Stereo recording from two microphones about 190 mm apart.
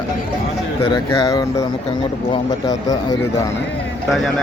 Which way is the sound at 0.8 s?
25° left (ahead or behind).